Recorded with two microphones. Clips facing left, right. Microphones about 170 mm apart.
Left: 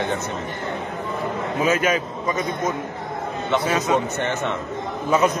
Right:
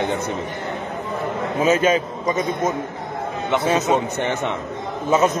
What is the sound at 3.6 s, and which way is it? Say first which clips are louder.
Speech: right 4 dB; 25° right (ahead or behind).